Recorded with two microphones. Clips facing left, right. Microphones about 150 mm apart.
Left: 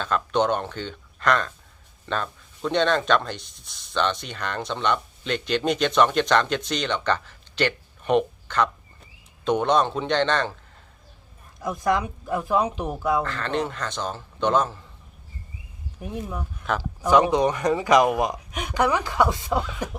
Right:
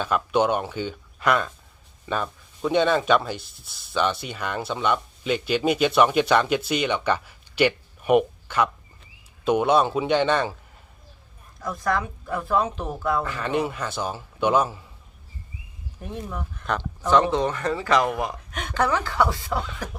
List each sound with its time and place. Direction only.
0.0 s speech: 10° right (ahead or behind)
11.6 s speech: 20° left (ahead or behind)
13.2 s speech: 10° right (ahead or behind)
16.0 s speech: 10° left (ahead or behind)